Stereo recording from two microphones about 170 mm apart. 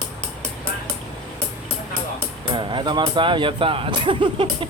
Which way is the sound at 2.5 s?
30° right (ahead or behind).